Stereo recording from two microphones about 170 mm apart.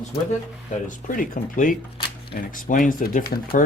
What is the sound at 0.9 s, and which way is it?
Speech, 50° left (ahead or behind).